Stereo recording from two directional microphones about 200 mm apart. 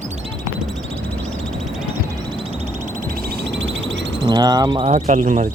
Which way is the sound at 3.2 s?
60° right (ahead or behind).